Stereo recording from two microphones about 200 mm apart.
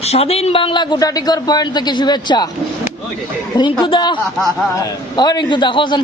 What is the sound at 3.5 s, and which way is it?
Speech, 20° left (ahead or behind).